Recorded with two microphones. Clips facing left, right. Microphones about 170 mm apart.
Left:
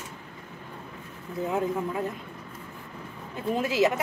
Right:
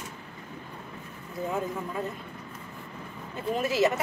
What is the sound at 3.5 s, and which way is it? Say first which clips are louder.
Speech: left 1 dB; 15° left (ahead or behind).